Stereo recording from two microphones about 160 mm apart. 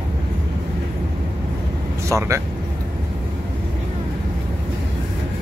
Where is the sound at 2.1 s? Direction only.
20° right (ahead or behind).